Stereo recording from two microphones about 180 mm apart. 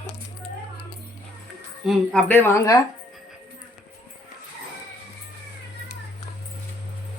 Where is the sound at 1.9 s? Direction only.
10° left (ahead or behind).